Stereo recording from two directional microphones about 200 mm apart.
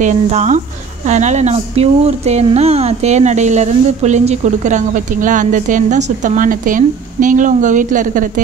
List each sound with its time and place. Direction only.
0.0 s speech: 35° right (ahead or behind)